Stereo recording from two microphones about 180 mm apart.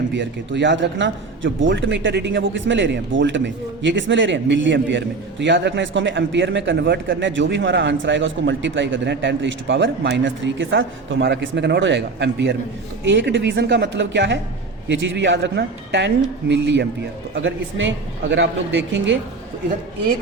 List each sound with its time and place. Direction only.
0.1 s a man's voice: 80° right
13.1 s a man's voice: 90° right